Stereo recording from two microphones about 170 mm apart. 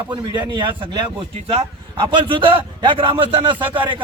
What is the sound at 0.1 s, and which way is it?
A man's voice, 25° right (ahead or behind).